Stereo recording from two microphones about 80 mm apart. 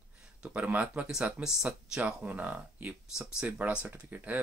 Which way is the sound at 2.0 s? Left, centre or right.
Centre.